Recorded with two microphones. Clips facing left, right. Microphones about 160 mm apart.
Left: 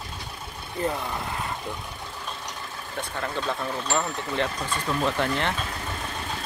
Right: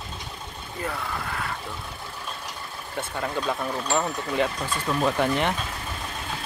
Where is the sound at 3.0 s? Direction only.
10° right (ahead or behind).